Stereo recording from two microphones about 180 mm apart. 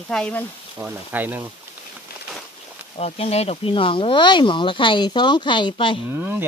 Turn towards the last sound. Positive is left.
turn(degrees=-10)  # may be behind; listen again after turning